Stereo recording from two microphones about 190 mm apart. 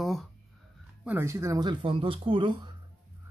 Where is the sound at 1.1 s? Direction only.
15° right (ahead or behind).